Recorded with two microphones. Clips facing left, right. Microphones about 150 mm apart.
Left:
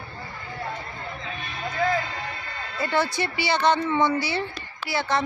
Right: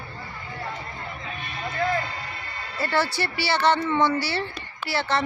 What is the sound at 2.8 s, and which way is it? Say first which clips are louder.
Speech: even; 15° left (ahead or behind).